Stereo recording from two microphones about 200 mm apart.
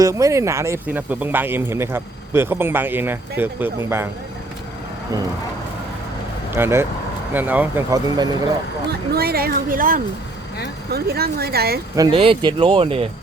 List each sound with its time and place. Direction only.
0.0 s speech: 15° right (ahead or behind)
6.6 s speech: 10° right (ahead or behind)
8.9 s a woman's voice: 50° right (ahead or behind)
11.9 s speech: 25° right (ahead or behind)